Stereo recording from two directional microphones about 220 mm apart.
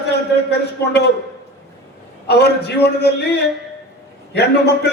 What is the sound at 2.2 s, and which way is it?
A man's voice, 50° left (ahead or behind).